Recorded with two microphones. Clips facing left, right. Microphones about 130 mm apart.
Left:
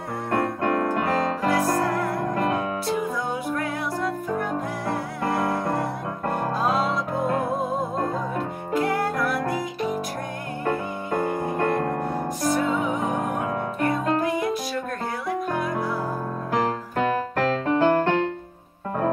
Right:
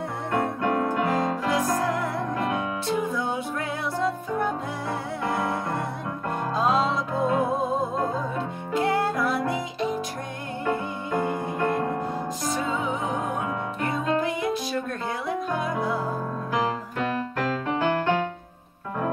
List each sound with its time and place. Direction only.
0.3 s music: 55° left (ahead or behind)
3.4 s music: 25° right (ahead or behind)
6.5 s music: 25° right (ahead or behind)
8.7 s music: 25° right (ahead or behind)
10.6 s music: 50° left (ahead or behind)
15.6 s music: 20° right (ahead or behind)
16.9 s keyboard: 40° left (ahead or behind)